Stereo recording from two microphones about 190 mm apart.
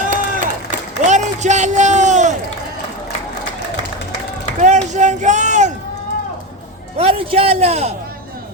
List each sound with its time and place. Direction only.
0.0 s a sound: 40° right (ahead or behind)
1.0 s a man's voice: 40° right (ahead or behind)
4.6 s speech: 40° right (ahead or behind)
6.9 s a man's voice: 30° right (ahead or behind)